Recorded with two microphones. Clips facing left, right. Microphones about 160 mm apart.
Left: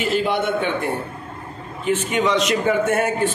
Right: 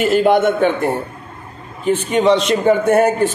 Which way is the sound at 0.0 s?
50° right (ahead or behind).